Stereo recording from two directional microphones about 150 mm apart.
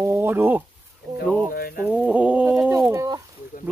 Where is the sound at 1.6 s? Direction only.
80° left.